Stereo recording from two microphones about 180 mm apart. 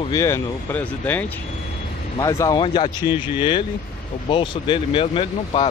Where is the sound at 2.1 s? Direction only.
20° left (ahead or behind).